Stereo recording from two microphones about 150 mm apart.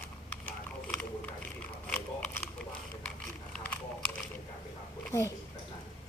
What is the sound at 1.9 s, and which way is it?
Biting, 10° left (ahead or behind).